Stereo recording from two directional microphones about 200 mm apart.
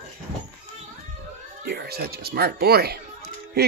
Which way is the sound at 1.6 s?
50° right (ahead or behind).